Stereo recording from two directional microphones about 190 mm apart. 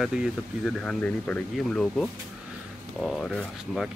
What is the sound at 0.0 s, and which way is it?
Speech, 5° right (ahead or behind).